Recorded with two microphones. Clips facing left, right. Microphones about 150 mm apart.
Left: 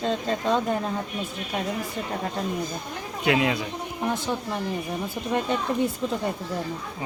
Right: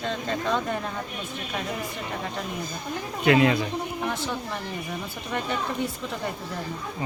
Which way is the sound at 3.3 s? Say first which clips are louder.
Right 3 dB; 10° left (ahead or behind).